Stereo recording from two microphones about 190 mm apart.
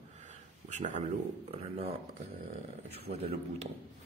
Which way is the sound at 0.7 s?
40° right (ahead or behind).